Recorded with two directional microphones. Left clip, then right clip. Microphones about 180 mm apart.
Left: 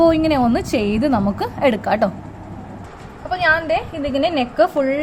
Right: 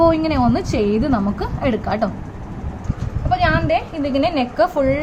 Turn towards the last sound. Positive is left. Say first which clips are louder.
# even
turn(degrees=15)  # may be behind; listen again after turning